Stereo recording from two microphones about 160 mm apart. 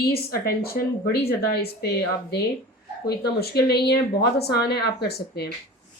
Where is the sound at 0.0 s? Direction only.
75° left (ahead or behind).